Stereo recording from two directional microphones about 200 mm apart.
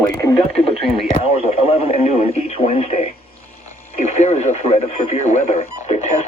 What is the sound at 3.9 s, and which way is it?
Speech, 35° left (ahead or behind).